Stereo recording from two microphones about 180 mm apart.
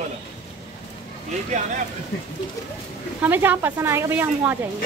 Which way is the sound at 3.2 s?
10° right (ahead or behind).